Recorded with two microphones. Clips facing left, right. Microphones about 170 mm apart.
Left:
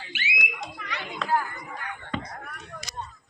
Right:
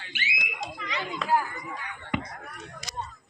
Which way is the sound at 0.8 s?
60° left (ahead or behind).